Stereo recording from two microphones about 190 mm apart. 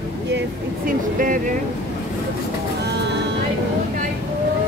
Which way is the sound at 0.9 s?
45° right (ahead or behind).